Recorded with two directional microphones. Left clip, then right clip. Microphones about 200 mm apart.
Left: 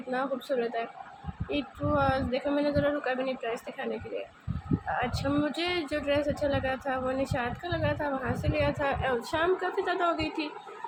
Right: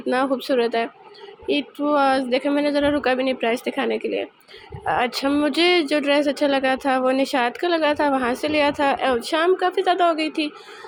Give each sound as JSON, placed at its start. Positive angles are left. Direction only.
{"t": 0.1, "sound": "speech", "side_deg": -50}